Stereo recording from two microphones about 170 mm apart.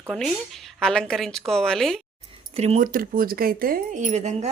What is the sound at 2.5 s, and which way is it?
Speech, 40° right (ahead or behind).